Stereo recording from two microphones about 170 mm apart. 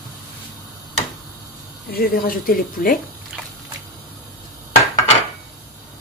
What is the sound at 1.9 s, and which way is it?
Speech, 60° left (ahead or behind).